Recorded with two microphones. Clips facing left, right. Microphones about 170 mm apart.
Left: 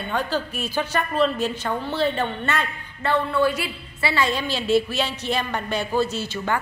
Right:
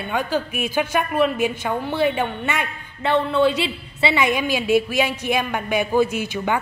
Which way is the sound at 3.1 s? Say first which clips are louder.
Right 3 dB; 25° right (ahead or behind).